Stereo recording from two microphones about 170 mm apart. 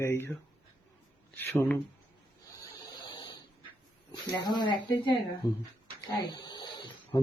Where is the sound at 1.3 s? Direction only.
15° left (ahead or behind).